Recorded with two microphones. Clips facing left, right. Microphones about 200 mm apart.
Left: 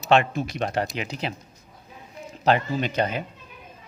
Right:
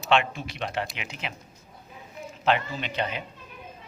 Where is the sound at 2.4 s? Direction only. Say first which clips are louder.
Left 4 dB; 40° left (ahead or behind).